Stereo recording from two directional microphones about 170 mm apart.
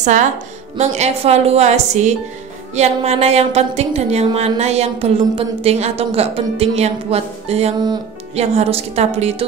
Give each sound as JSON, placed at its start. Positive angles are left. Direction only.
{"t": 0.0, "sound": "a woman's voice", "side_deg": -45}